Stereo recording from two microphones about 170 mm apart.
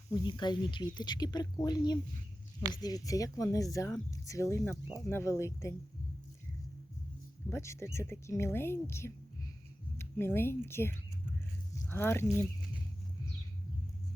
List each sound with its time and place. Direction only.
0.1 s speech: 25° left (ahead or behind)
7.5 s a woman's voice: 15° left (ahead or behind)
11.7 s a sound: 15° left (ahead or behind)